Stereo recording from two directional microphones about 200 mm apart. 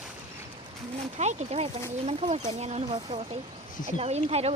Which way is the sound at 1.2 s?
35° right (ahead or behind).